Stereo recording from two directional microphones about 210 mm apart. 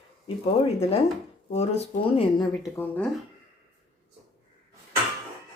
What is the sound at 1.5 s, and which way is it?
Speech, 30° left (ahead or behind).